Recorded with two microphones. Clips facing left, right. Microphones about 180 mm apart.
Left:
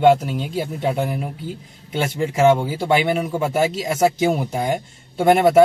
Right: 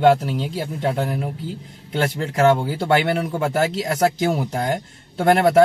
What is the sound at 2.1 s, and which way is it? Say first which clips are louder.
Speech: left 2 dB; 10° left (ahead or behind).